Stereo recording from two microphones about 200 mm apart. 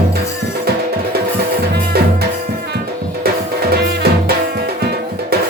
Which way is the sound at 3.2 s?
50° right (ahead or behind).